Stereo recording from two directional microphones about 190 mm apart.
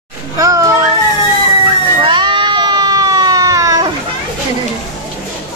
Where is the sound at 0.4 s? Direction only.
15° right (ahead or behind).